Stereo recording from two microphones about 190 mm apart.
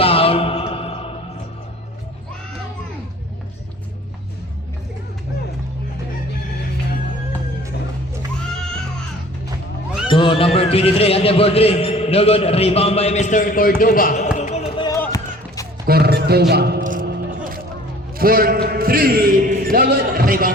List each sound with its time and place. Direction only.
0.0 s music: 30° left (ahead or behind)
10.1 s a man's voice: 25° left (ahead or behind); by 14.3 s 45° left (ahead or behind)
14.3 s music: 35° left (ahead or behind)
14.8 s music: 20° left (ahead or behind)
15.9 s a sound: 55° right (ahead or behind)
18.2 s a man's voice: 50° right (ahead or behind)